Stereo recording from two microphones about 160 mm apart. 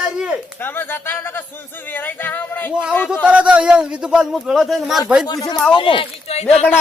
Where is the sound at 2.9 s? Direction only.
10° left (ahead or behind).